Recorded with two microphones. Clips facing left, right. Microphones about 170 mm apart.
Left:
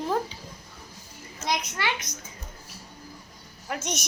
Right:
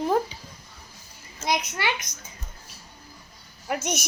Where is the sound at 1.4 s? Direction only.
10° right (ahead or behind).